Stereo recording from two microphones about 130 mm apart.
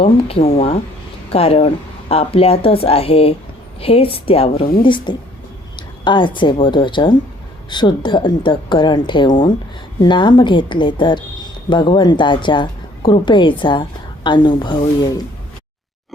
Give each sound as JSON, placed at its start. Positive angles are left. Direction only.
{"t": 0.0, "sound": "a woman's voice", "side_deg": 45}